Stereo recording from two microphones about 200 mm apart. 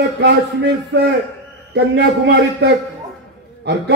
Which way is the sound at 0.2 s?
60° right (ahead or behind).